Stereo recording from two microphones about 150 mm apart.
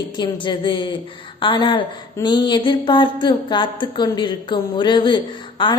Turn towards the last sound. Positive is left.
turn(degrees=35)  # may be behind; listen again after turning